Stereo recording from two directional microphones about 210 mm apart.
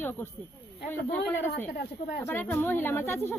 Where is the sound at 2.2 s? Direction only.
10° left (ahead or behind).